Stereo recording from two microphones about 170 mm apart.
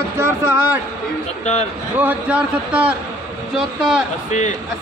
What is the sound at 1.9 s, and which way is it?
A man's voice, 10° right (ahead or behind).